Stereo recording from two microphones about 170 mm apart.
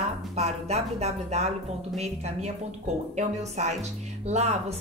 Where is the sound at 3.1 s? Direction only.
45° right (ahead or behind).